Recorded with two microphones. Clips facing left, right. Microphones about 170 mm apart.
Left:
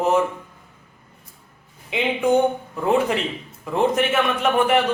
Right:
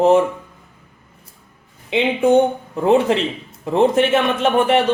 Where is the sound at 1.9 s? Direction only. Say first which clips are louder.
Right 5 dB; 30° right (ahead or behind).